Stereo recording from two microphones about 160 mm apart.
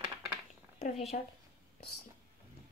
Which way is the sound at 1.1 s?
65° left (ahead or behind).